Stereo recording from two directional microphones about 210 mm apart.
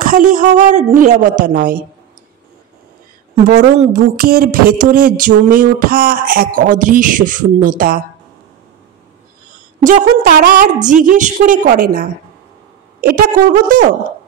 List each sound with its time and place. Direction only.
0.0 s a sound: 40° right (ahead or behind)
0.6 s speech: 35° right (ahead or behind)
3.4 s speech: 35° right (ahead or behind)
9.8 s speech: 40° right (ahead or behind)